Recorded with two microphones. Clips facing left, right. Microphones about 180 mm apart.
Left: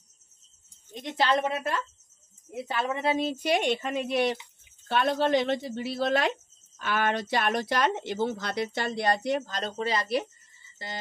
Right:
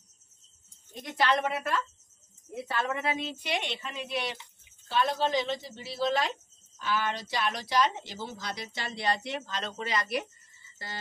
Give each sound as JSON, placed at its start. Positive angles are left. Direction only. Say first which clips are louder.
{"t": 0.9, "sound": "a woman's voice", "louder": "left 2 dB", "side_deg": 25}
{"t": 2.9, "sound": "speech", "louder": "left 5 dB", "side_deg": 30}
{"t": 4.8, "sound": "a woman's voice", "louder": "left 3 dB", "side_deg": 60}